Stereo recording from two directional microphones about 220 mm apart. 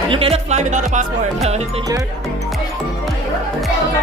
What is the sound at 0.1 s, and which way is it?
Speech, 25° right (ahead or behind).